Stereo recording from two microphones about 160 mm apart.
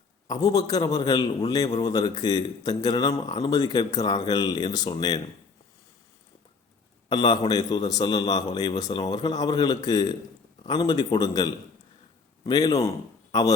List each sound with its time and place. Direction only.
0.3 s a man's voice: 25° left (ahead or behind)
7.1 s a man's voice: 30° left (ahead or behind)